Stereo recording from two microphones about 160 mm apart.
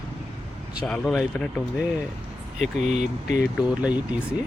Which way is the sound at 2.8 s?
45° right (ahead or behind).